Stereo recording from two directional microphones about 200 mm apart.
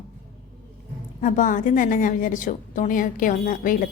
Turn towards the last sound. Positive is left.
turn(degrees=45)  # may be behind; listen again after turning